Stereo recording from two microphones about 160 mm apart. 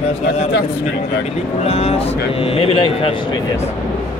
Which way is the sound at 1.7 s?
40° left (ahead or behind).